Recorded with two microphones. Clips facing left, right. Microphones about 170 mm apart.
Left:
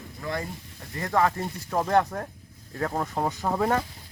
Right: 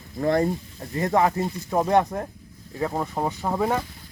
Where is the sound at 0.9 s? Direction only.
25° right (ahead or behind); by 3.8 s 5° right (ahead or behind).